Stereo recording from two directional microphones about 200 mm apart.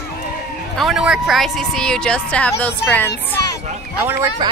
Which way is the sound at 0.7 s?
Centre (ahead or behind).